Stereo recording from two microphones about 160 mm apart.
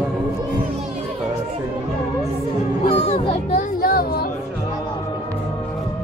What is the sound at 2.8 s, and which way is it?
Children playing, 40° left (ahead or behind).